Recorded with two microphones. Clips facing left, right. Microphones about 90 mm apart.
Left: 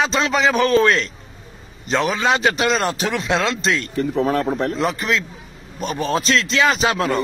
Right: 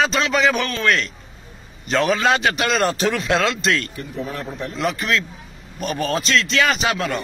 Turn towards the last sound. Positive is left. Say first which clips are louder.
# left 3 dB
turn(degrees=35)  # may be behind; listen again after turning